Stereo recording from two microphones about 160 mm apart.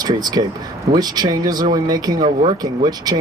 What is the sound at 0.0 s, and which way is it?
Speech, 25° right (ahead or behind).